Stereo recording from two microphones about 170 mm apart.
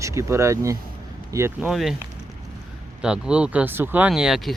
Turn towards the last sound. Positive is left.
turn(degrees=0)  # may be behind; listen again after turning